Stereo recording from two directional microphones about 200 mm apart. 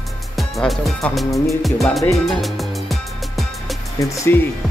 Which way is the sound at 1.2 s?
15° left (ahead or behind).